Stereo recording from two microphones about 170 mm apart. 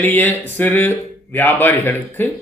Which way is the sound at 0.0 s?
10° left (ahead or behind).